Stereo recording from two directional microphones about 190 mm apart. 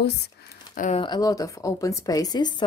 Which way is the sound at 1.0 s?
20° left (ahead or behind).